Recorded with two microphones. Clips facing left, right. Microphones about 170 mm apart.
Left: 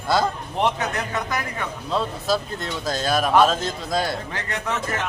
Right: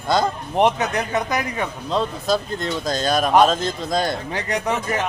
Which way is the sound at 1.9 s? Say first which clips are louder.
Right 2 dB; 5° left (ahead or behind).